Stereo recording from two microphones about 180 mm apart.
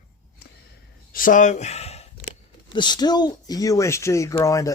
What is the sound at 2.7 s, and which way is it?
Speech, 25° left (ahead or behind).